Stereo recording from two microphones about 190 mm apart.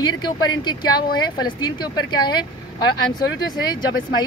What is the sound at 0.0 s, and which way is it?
Speech, 20° left (ahead or behind).